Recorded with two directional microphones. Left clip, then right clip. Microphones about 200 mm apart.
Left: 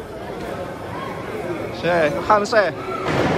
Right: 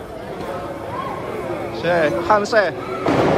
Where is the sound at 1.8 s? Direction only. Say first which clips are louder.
Right 1 dB; 5° right (ahead or behind).